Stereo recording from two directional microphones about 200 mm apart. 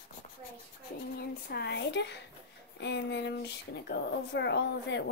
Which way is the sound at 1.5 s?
55° left (ahead or behind).